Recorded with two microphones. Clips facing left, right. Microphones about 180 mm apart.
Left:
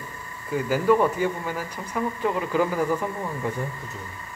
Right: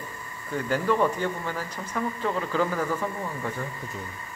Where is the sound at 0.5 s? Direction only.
5° left (ahead or behind).